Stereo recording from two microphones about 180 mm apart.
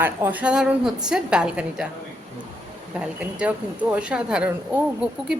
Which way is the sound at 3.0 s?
5° right (ahead or behind).